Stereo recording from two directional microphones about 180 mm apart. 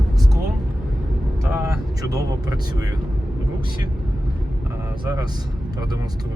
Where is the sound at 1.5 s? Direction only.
20° right (ahead or behind).